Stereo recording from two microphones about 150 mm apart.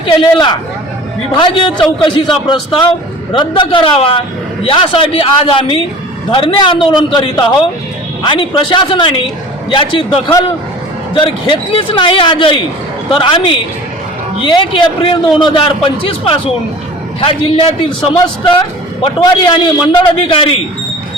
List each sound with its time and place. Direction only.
0.0 s a man's voice: 30° left (ahead or behind)
17.2 s a man's voice: 35° left (ahead or behind)